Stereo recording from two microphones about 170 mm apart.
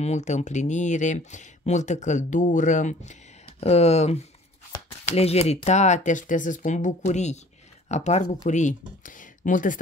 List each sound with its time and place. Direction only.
0.0 s speech: 40° left (ahead or behind)